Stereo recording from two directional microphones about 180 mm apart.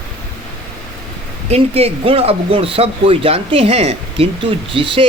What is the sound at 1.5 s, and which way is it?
Speech, 35° right (ahead or behind).